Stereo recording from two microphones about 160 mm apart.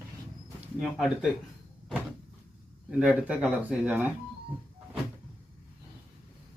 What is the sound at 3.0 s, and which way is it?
Speech, 5° right (ahead or behind).